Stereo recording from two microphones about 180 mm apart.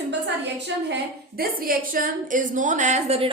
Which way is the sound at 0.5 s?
75° right (ahead or behind).